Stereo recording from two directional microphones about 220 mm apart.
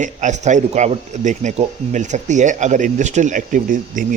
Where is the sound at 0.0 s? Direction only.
35° right (ahead or behind).